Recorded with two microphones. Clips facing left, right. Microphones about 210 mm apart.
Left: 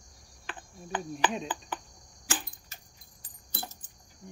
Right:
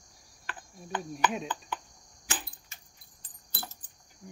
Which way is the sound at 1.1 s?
Centre (ahead or behind).